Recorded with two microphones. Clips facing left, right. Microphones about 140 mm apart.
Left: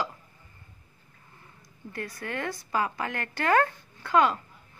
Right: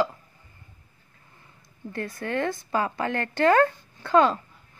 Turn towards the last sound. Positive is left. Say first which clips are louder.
# right 3 dB
turn(degrees=-30)  # may be behind; listen again after turning